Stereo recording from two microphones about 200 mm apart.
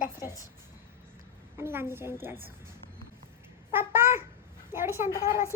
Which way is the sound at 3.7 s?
10° right (ahead or behind).